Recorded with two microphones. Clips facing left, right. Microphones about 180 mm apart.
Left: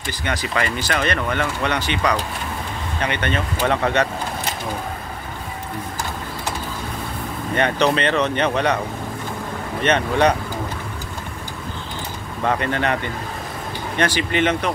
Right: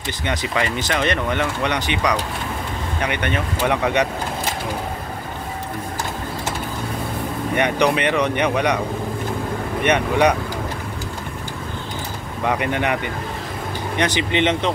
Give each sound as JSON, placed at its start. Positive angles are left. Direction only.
{"t": 0.2, "sound": "speech", "side_deg": -20}
{"t": 7.5, "sound": "speech", "side_deg": -15}
{"t": 9.8, "sound": "speech", "side_deg": -10}
{"t": 12.4, "sound": "speech", "side_deg": -15}